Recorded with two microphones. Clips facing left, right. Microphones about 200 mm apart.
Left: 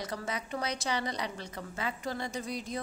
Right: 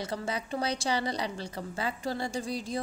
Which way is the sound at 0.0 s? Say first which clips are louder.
Right 3 dB; 30° right (ahead or behind).